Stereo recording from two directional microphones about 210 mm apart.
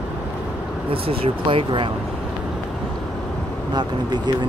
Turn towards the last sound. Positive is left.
turn(degrees=-20)  # may be behind; listen again after turning